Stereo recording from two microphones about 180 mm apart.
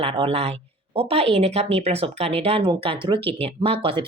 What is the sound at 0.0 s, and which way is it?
Speech, 30° right (ahead or behind).